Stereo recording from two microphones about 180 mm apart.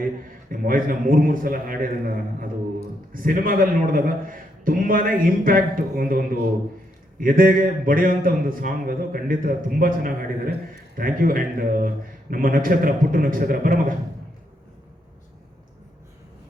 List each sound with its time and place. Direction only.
0.5 s a man's voice: 50° right (ahead or behind)